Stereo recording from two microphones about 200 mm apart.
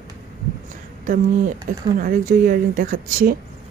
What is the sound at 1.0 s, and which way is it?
A woman's voice, 40° right (ahead or behind).